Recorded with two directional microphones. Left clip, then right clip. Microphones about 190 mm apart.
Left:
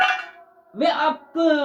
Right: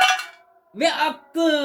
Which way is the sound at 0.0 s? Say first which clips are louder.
Right 2 dB; 5° left (ahead or behind).